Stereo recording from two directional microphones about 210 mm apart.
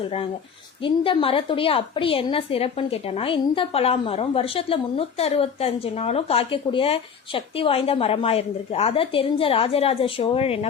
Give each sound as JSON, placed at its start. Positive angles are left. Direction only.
{"t": 0.8, "sound": "a woman's voice", "side_deg": 25}